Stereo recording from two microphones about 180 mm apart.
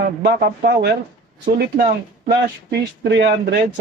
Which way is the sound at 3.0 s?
65° right (ahead or behind).